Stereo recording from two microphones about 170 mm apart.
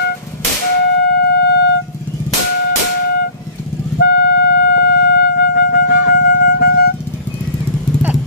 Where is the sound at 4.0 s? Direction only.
70° left (ahead or behind).